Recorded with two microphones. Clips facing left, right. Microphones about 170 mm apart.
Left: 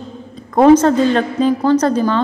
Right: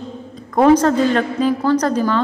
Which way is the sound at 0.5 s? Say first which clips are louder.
Left 3 dB; 25° left (ahead or behind).